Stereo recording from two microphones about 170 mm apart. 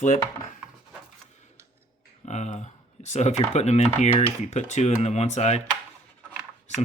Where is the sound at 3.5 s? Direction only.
40° left (ahead or behind).